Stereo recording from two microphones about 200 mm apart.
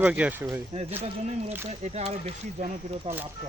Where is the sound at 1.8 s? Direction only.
35° right (ahead or behind).